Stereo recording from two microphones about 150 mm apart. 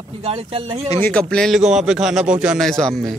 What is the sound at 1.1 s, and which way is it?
A man's voice, 5° left (ahead or behind).